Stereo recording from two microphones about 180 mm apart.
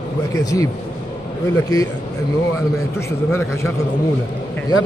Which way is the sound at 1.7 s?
20° left (ahead or behind).